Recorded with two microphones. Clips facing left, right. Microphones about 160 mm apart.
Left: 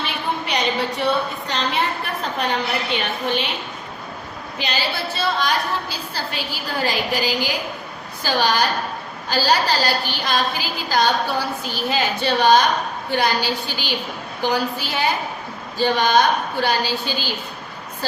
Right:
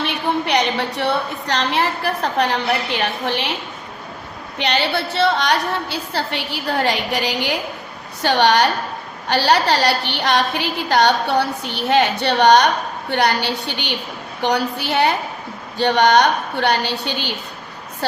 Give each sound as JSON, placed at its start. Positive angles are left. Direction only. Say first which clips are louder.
{"t": 0.0, "sound": "a woman's voice", "louder": "right 5 dB", "side_deg": -70}
{"t": 4.5, "sound": "a woman's voice", "louder": "right 6 dB", "side_deg": -65}